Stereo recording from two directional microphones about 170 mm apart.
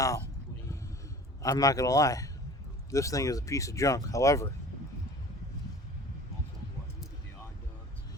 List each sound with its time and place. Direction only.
1.4 s speech: 20° left (ahead or behind)